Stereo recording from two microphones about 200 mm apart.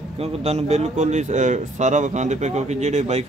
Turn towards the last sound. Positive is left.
turn(degrees=-35)  # may be behind; listen again after turning